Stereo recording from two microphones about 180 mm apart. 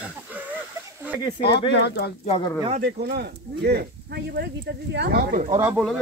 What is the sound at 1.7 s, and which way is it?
Speech, 65° left (ahead or behind).